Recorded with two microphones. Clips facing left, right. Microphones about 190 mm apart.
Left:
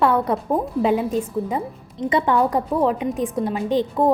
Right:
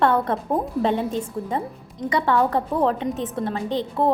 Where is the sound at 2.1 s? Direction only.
20° left (ahead or behind).